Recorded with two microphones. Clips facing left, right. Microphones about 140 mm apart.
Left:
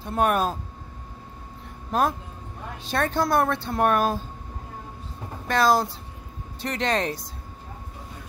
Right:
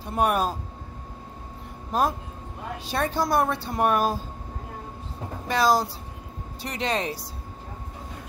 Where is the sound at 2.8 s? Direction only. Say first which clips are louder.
Left 2 dB; 10° right (ahead or behind).